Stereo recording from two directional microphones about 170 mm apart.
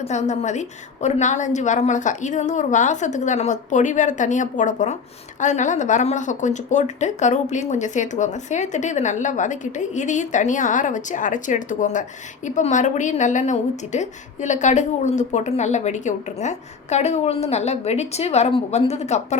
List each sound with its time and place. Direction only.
0.0 s a woman's voice: 40° left (ahead or behind)